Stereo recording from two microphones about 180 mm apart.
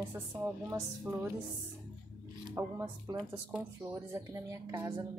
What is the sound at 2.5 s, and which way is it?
A woman's voice, 15° right (ahead or behind).